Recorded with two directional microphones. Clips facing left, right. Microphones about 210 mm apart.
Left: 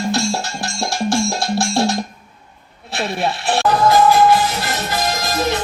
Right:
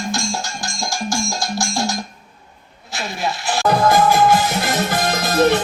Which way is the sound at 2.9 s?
30° left (ahead or behind).